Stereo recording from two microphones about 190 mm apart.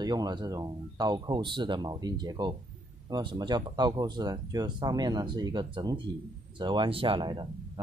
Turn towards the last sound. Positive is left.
turn(degrees=-25)  # may be behind; listen again after turning